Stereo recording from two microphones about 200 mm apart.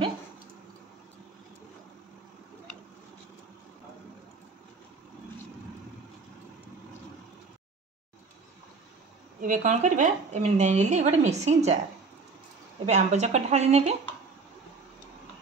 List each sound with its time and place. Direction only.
9.4 s a woman's voice: 40° right (ahead or behind)
12.8 s a woman's voice: 35° right (ahead or behind)